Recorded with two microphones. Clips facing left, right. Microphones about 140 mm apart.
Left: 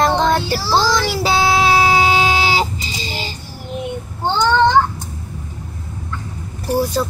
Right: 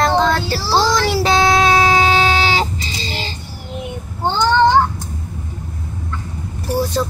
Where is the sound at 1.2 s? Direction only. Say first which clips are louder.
Right 1 dB; 10° left (ahead or behind).